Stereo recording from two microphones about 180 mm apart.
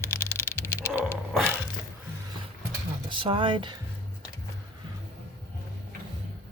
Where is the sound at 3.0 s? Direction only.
30° right (ahead or behind).